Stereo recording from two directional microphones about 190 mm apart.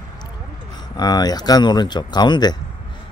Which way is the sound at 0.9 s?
20° left (ahead or behind).